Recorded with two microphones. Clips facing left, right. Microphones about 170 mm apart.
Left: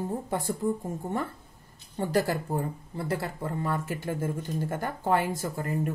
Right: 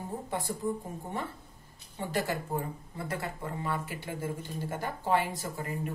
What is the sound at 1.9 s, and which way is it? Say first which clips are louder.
Speech: left 6 dB; 40° left (ahead or behind).